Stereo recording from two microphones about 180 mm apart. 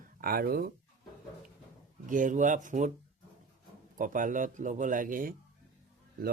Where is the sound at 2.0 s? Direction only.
45° right (ahead or behind).